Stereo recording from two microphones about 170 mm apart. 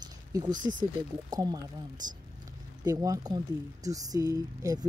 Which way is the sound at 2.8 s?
20° right (ahead or behind).